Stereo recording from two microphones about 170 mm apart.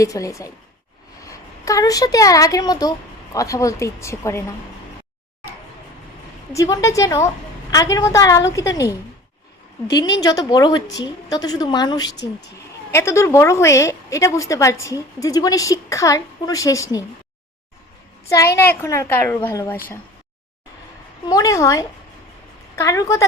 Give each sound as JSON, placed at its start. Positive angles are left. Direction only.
{"t": 0.0, "sound": "a woman's voice", "side_deg": 20}
{"t": 6.5, "sound": "a woman's voice", "side_deg": 20}
{"t": 10.2, "sound": "a woman's voice", "side_deg": 20}
{"t": 18.3, "sound": "a woman's voice", "side_deg": 15}
{"t": 21.2, "sound": "a woman's voice", "side_deg": 20}